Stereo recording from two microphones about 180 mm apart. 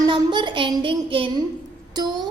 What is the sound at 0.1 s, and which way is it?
A woman's voice, 25° right (ahead or behind).